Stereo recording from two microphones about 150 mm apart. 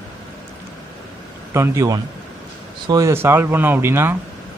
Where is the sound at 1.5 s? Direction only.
20° right (ahead or behind).